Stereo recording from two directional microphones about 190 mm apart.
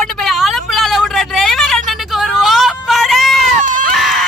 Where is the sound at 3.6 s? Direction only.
45° right (ahead or behind).